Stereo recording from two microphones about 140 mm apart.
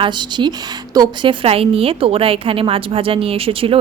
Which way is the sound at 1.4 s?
40° right (ahead or behind).